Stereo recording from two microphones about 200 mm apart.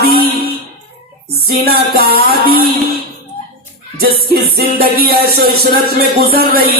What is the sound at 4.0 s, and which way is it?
Music, 50° right (ahead or behind).